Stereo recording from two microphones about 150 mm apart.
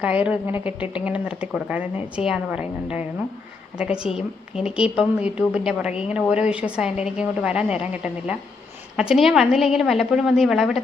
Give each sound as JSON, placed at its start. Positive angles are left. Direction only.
{"t": 0.0, "sound": "a woman's voice", "side_deg": -10}